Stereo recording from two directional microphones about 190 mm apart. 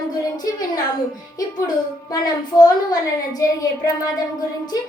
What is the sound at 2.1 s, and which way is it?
A woman's voice, 20° left (ahead or behind).